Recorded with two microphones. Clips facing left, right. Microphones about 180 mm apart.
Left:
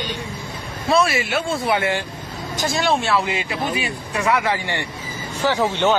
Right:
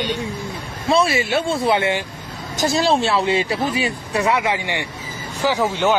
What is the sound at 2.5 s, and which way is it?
Speech, 35° right (ahead or behind).